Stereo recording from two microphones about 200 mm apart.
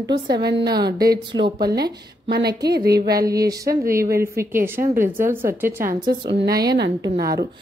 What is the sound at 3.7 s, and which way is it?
Speech, 45° right (ahead or behind).